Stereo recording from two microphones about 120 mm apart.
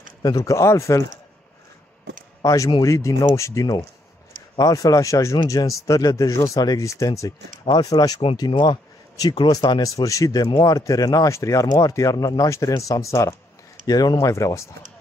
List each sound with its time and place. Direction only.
0.2 s speech: 30° left (ahead or behind)
2.4 s speech: 30° left (ahead or behind)
7.6 s speech: 40° left (ahead or behind)